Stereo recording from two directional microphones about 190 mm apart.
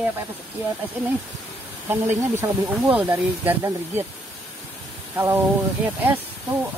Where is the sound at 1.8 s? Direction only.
10° right (ahead or behind).